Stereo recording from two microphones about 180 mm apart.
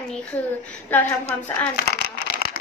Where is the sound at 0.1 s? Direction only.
5° left (ahead or behind).